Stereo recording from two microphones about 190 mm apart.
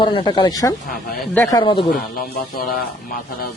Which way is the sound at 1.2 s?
10° left (ahead or behind).